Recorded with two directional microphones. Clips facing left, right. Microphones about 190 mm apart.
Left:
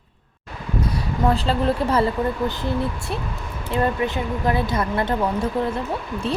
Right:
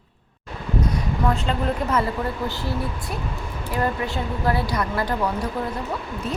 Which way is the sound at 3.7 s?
20° left (ahead or behind).